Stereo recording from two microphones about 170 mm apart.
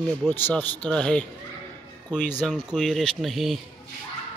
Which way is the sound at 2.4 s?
Centre (ahead or behind).